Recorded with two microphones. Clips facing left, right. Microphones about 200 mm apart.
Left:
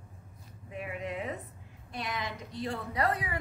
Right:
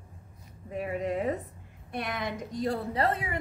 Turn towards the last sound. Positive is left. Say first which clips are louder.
# right 2 dB
turn(degrees=-25)  # may be behind; listen again after turning